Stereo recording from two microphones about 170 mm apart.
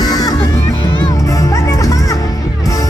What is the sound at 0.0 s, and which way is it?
Music, 20° left (ahead or behind).